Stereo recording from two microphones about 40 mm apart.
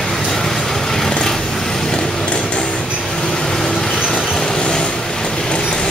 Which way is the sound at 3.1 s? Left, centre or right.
Centre.